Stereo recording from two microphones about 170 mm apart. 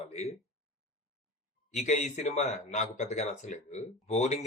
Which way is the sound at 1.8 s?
45° left (ahead or behind).